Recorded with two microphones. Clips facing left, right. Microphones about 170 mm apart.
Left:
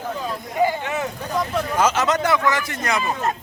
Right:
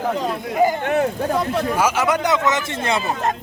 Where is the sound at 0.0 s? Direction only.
70° right (ahead or behind).